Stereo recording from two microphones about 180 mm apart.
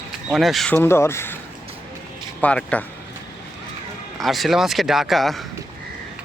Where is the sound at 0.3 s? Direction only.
Centre (ahead or behind).